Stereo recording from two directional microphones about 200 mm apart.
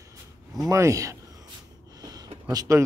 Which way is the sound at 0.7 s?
15° right (ahead or behind).